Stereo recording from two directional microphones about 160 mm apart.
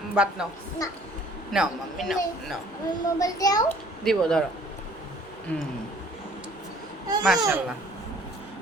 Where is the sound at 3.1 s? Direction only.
20° left (ahead or behind).